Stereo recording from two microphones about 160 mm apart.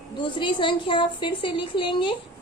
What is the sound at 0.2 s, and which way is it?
A woman's voice, 30° left (ahead or behind).